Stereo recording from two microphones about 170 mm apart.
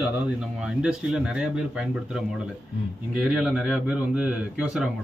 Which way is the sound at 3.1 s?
5° right (ahead or behind).